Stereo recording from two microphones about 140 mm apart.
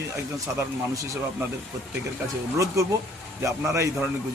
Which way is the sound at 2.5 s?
20° right (ahead or behind).